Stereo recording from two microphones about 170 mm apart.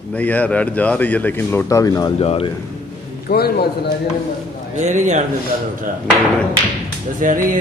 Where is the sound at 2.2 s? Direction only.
35° left (ahead or behind).